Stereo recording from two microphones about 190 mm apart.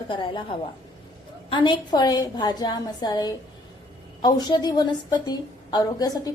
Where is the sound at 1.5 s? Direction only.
25° left (ahead or behind).